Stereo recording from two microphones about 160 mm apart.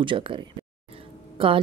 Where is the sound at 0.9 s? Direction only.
35° right (ahead or behind).